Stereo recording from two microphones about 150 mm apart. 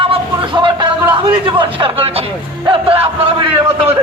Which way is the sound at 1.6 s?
35° right (ahead or behind).